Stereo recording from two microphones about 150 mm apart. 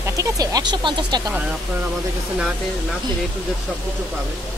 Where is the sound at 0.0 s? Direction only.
20° right (ahead or behind).